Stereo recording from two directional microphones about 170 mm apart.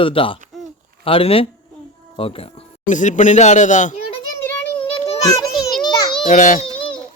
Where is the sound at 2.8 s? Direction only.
45° left (ahead or behind).